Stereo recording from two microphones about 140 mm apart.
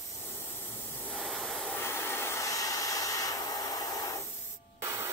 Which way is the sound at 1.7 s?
15° left (ahead or behind).